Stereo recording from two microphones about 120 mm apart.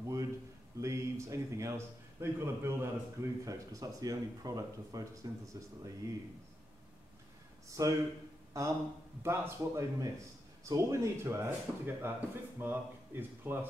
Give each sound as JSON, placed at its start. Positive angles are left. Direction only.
{"t": 0.0, "sound": "a sound", "side_deg": -25}
{"t": 0.7, "sound": "a man's voice", "side_deg": -25}
{"t": 7.8, "sound": "a man's voice", "side_deg": -25}
{"t": 9.2, "sound": "a man's voice", "side_deg": -20}